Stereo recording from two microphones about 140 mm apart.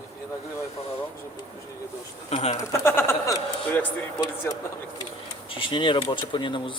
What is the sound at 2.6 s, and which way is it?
Speech, 20° left (ahead or behind).